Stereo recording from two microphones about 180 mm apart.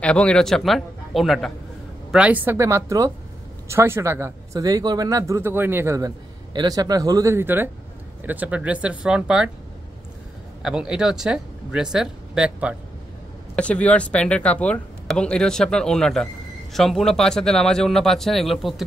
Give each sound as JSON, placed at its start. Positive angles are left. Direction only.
{"t": 0.0, "sound": "speech", "side_deg": 5}
{"t": 10.6, "sound": "speech", "side_deg": -5}
{"t": 13.6, "sound": "speech", "side_deg": 5}